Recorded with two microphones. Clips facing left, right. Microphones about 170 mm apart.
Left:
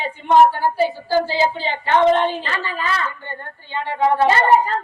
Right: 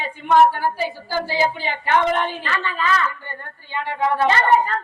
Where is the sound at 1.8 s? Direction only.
20° left (ahead or behind).